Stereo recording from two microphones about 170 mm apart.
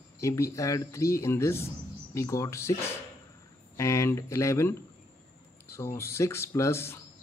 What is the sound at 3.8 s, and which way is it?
Speech, 15° left (ahead or behind).